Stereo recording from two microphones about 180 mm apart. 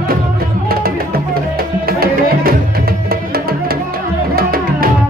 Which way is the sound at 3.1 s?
60° right (ahead or behind).